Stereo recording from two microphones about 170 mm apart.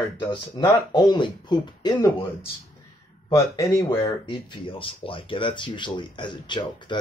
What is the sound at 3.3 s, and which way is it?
Speech, 20° left (ahead or behind).